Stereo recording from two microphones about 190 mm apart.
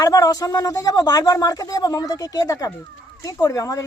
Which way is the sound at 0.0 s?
20° left (ahead or behind).